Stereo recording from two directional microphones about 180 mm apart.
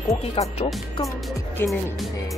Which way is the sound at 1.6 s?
10° left (ahead or behind).